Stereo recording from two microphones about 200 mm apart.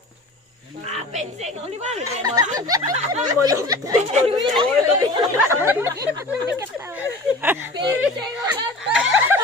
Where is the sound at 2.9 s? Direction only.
35° right (ahead or behind).